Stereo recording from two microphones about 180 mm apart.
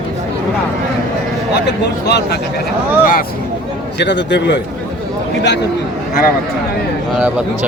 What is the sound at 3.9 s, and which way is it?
Speech, 75° left (ahead or behind).